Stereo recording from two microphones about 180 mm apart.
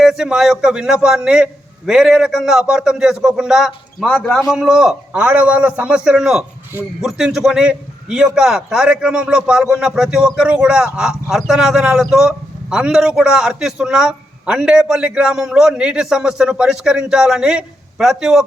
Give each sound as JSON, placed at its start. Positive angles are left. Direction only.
{"t": 0.0, "sound": "a man's voice", "side_deg": 0}